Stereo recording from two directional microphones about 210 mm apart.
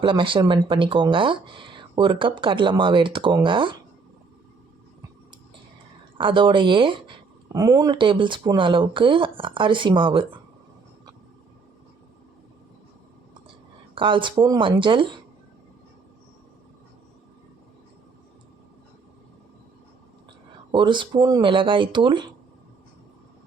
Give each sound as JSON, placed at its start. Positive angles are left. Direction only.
{"t": 0.0, "sound": "speech", "side_deg": -25}
{"t": 6.1, "sound": "speech", "side_deg": -25}
{"t": 13.9, "sound": "speech", "side_deg": -25}
{"t": 20.7, "sound": "speech", "side_deg": -20}